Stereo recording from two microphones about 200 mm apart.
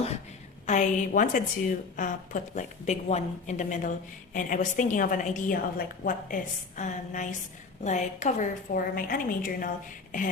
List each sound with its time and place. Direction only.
0.7 s a woman's voice: 40° left (ahead or behind)